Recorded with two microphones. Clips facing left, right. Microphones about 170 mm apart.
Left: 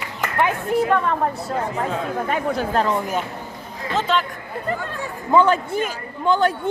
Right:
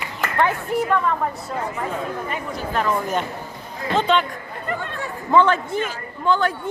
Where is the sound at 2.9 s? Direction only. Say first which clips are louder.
Even; 10° left (ahead or behind).